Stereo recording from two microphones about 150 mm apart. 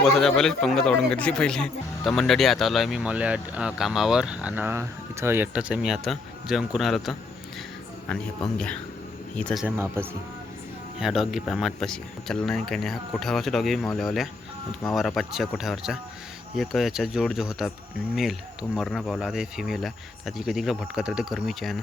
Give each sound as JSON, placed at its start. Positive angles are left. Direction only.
{"t": 0.0, "sound": "speech", "side_deg": 5}
{"t": 9.6, "sound": "speech", "side_deg": -15}
{"t": 11.0, "sound": "speech", "side_deg": -5}